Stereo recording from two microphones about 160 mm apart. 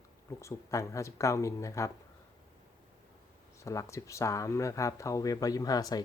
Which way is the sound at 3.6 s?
20° left (ahead or behind).